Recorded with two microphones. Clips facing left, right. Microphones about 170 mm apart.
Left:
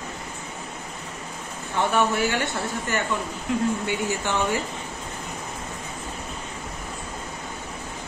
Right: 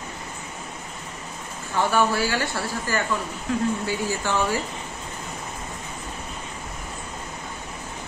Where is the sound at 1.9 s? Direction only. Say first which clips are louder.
Even; 20° left (ahead or behind).